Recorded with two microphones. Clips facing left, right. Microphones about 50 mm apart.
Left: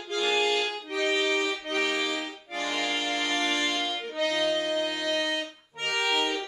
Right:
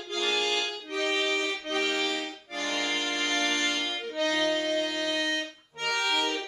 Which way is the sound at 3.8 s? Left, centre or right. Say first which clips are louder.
Even; centre.